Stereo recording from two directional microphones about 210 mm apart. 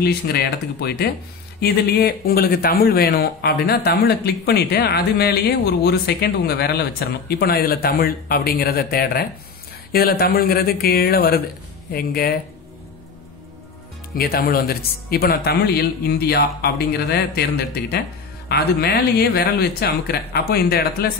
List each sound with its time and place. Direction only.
0.0 s speech: 50° left (ahead or behind)
14.1 s speech: 45° left (ahead or behind)
18.5 s speech: 50° left (ahead or behind)